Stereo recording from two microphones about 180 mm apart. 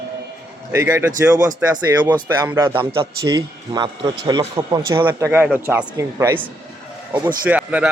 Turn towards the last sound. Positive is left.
turn(degrees=-5)  # may be behind; listen again after turning